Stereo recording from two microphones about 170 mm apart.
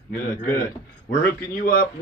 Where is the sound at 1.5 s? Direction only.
60° left (ahead or behind).